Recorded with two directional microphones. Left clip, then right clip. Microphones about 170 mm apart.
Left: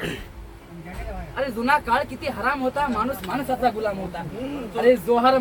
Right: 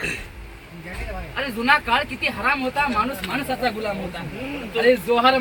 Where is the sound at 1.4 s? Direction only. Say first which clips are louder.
Right 2 dB; 5° left (ahead or behind).